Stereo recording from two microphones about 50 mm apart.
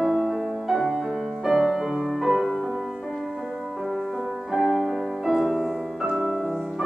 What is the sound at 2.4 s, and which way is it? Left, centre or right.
Music, centre.